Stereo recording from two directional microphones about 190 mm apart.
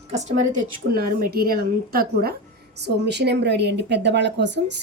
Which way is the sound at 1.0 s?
50° right (ahead or behind).